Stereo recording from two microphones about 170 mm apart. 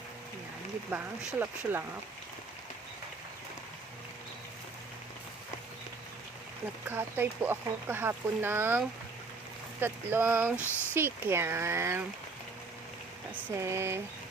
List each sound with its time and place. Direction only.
0.9 s speech: 10° right (ahead or behind)
6.8 s speech: 10° right (ahead or behind)
9.8 s speech: 10° right (ahead or behind)
10.6 s speech: 15° left (ahead or behind)
10.9 s speech: 15° right (ahead or behind)
13.6 s speech: 15° right (ahead or behind)